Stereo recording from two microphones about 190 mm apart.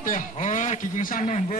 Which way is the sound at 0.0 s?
45° left (ahead or behind).